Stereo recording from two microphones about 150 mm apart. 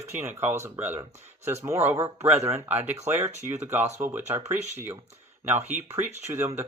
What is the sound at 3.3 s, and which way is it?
Speech, 50° right (ahead or behind).